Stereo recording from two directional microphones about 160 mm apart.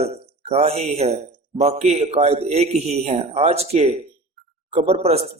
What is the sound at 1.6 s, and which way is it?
Speech, 40° right (ahead or behind).